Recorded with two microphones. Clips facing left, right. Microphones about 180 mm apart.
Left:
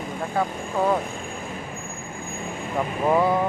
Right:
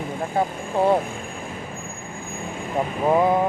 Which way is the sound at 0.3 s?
25° right (ahead or behind).